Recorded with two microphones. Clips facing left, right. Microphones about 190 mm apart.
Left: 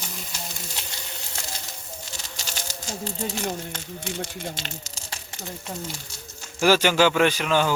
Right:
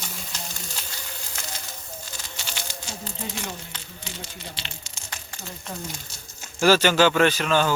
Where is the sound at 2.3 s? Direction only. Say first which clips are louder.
Even; 40° left (ahead or behind).